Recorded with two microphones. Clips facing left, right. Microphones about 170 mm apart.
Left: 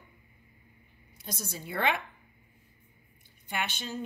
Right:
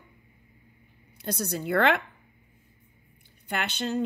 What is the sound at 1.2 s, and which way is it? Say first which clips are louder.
Speech: right 10 dB; 65° right (ahead or behind).